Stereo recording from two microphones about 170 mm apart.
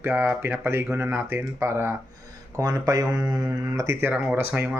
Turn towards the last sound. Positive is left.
turn(degrees=-10)  # may be behind; listen again after turning